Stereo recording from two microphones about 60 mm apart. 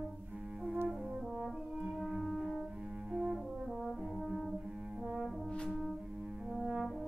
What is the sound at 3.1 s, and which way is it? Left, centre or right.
Brass instrument, centre.